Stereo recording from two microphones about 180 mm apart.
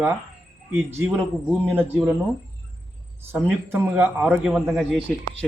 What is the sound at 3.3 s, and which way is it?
A man's voice, 10° right (ahead or behind).